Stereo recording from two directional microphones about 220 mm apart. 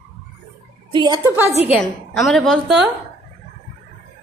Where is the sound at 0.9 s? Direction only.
20° right (ahead or behind).